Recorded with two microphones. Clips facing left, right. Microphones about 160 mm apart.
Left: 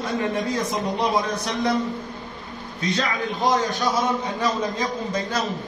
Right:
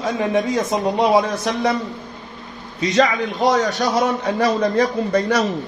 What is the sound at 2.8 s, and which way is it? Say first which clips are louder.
A man's voice: right 8 dB; 90° right.